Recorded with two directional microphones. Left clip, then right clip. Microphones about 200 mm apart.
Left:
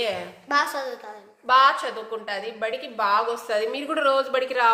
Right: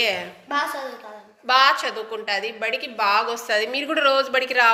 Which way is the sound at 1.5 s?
Centre (ahead or behind).